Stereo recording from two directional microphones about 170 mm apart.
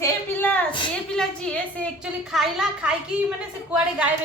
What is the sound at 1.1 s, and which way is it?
A woman's voice, 5° left (ahead or behind).